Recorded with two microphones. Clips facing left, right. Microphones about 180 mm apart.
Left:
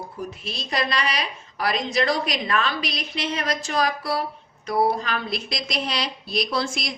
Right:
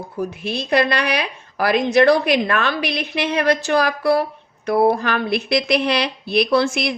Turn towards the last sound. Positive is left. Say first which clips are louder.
# right 9 dB
turn(degrees=-65)  # may be behind; listen again after turning